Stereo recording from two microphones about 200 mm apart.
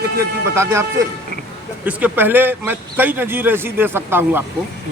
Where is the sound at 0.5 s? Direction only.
15° right (ahead or behind).